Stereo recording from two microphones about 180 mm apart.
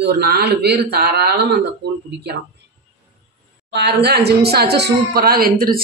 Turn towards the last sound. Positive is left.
turn(degrees=-55)  # may be behind; listen again after turning